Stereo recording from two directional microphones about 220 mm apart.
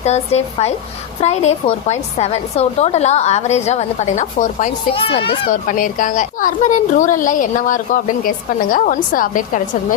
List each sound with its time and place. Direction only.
0.0 s a woman's voice: 30° left (ahead or behind)
5.0 s speech: 25° left (ahead or behind)
5.5 s a woman's voice: 40° left (ahead or behind)